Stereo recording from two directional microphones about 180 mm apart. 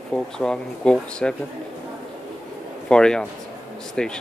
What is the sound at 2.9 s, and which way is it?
Speech, 5° left (ahead or behind).